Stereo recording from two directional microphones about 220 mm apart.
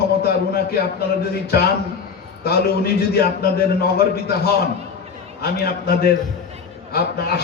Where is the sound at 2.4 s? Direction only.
45° left (ahead or behind).